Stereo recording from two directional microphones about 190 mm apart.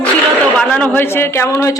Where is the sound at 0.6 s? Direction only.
5° left (ahead or behind).